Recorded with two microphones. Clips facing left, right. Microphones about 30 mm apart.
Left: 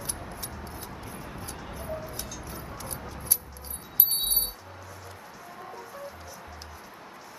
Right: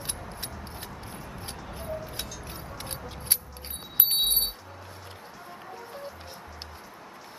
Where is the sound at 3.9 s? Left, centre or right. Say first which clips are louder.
Right 5 dB; right.